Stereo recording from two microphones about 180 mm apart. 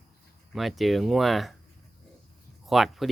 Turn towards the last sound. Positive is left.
turn(degrees=0)  # may be behind; listen again after turning